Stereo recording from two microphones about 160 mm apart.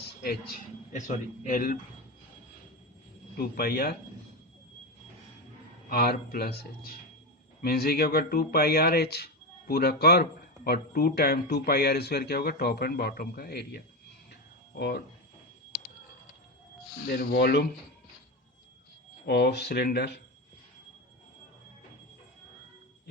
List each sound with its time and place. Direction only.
0.9 s a man's voice: 50° left (ahead or behind)
3.3 s speech: 70° left (ahead or behind)
5.9 s speech: 70° left (ahead or behind); by 15.0 s 90° left
17.1 s speech: 85° left
19.2 s speech: 90° left